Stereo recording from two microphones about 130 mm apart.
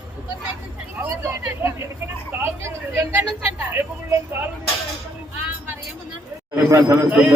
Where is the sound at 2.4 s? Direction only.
20° right (ahead or behind).